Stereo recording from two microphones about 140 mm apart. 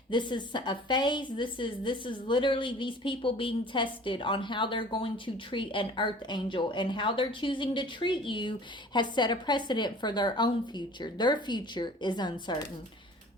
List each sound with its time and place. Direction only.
0.1 s a woman's voice: 35° left (ahead or behind)